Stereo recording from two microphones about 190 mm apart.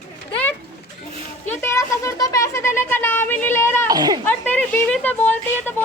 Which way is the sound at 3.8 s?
20° right (ahead or behind).